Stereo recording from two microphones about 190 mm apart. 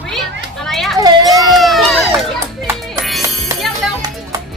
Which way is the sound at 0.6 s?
Centre (ahead or behind).